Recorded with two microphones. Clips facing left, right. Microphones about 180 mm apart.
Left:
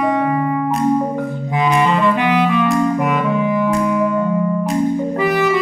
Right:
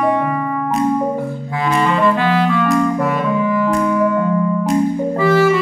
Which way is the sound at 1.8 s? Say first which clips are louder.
Right 2 dB; 20° left (ahead or behind).